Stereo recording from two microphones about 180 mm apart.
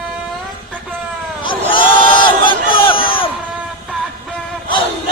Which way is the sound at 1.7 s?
25° left (ahead or behind).